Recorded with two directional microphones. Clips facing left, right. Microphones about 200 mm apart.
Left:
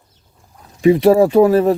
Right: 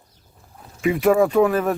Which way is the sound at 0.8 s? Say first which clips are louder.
Left 6 dB; 35° left (ahead or behind).